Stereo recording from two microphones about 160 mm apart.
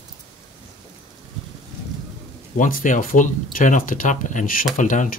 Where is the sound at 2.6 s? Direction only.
60° left (ahead or behind).